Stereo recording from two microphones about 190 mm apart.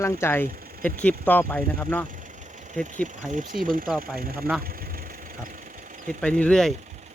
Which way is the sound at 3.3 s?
45° right (ahead or behind).